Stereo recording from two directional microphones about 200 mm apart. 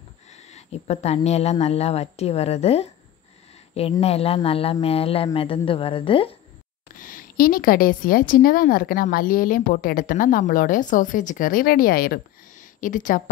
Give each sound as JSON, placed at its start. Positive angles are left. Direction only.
{"t": 0.5, "sound": "speech", "side_deg": 35}
{"t": 4.0, "sound": "speech", "side_deg": 30}
{"t": 7.0, "sound": "a woman's voice", "side_deg": 45}